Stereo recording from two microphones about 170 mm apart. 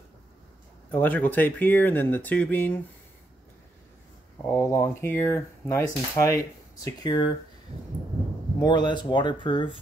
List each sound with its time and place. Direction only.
0.9 s speech: 10° left (ahead or behind)
4.5 s speech: 15° left (ahead or behind)
8.5 s speech: 25° left (ahead or behind)